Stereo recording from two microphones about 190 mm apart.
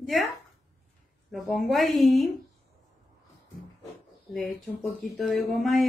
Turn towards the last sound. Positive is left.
turn(degrees=0)  # may be behind; listen again after turning